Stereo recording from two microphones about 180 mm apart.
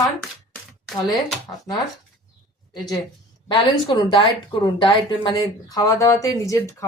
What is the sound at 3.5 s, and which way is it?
A woman's voice, 25° left (ahead or behind).